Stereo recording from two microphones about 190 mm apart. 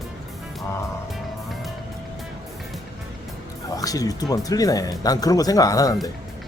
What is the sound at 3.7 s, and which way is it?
Speech, 20° left (ahead or behind).